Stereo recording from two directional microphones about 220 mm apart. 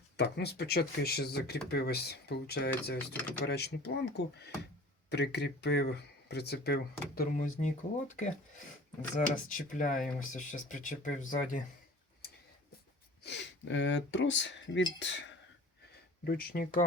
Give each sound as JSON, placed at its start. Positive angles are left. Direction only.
{"t": 0.2, "sound": "speech", "side_deg": 50}
{"t": 7.2, "sound": "speech", "side_deg": 35}
{"t": 9.5, "sound": "speech", "side_deg": 35}
{"t": 13.2, "sound": "speech", "side_deg": 50}
{"t": 16.2, "sound": "speech", "side_deg": 45}